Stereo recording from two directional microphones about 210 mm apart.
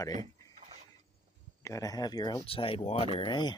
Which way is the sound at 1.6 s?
15° left (ahead or behind).